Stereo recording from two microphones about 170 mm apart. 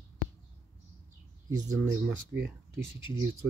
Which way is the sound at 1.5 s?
15° right (ahead or behind).